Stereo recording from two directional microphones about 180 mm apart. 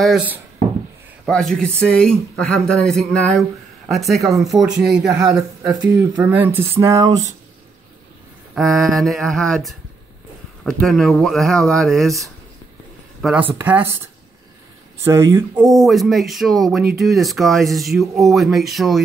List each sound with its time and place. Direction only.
0.0 s speech: 5° right (ahead or behind)
8.5 s speech: centre (ahead or behind)
15.0 s speech: 15° right (ahead or behind)
15.6 s speech: centre (ahead or behind)